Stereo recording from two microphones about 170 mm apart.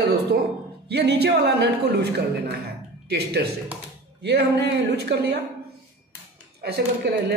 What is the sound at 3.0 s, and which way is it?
Speech, 70° right (ahead or behind).